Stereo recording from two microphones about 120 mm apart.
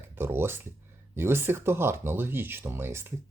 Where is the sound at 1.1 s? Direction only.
20° right (ahead or behind).